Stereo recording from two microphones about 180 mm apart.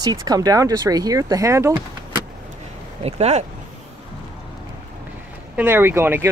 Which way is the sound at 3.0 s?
35° right (ahead or behind).